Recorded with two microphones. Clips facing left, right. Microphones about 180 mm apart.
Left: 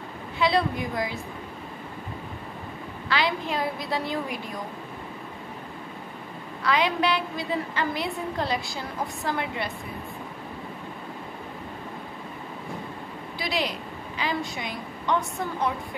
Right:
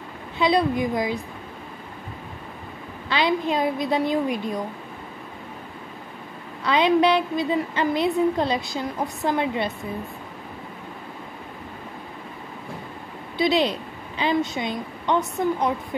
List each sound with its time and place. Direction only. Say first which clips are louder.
0.4 s a woman's voice: right 4 dB; 20° right (ahead or behind)
3.1 s a woman's voice: right 4 dB; 20° right (ahead or behind)
6.6 s a woman's voice: right 6 dB; 25° right (ahead or behind)
13.4 s a woman's voice: right 9 dB; 25° right (ahead or behind)